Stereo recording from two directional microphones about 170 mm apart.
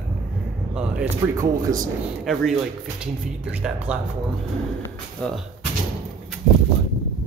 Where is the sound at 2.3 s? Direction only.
Centre (ahead or behind).